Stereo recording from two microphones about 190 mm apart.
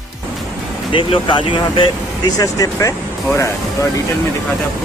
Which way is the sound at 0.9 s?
25° left (ahead or behind).